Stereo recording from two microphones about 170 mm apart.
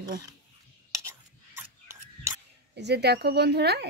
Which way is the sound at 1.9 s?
15° right (ahead or behind).